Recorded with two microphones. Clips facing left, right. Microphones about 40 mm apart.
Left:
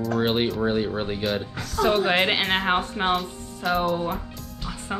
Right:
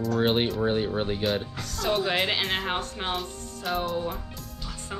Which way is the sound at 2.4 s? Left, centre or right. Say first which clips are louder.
Left 4 dB; centre.